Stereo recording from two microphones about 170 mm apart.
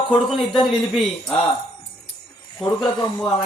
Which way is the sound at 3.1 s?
5° left (ahead or behind).